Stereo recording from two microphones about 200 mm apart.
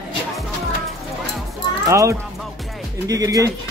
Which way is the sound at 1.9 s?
15° right (ahead or behind).